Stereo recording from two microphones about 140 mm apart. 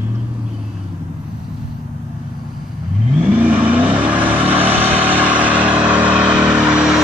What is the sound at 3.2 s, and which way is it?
Vehicle, 15° right (ahead or behind).